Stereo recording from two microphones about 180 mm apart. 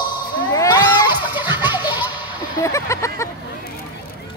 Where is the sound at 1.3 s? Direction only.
10° right (ahead or behind).